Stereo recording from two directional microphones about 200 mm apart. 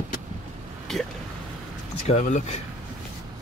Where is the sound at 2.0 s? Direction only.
35° left (ahead or behind).